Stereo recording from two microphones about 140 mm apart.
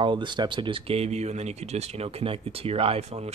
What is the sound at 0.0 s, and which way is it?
Speech, 35° right (ahead or behind).